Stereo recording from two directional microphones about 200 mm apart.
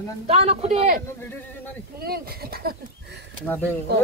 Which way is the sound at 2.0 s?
50° right (ahead or behind).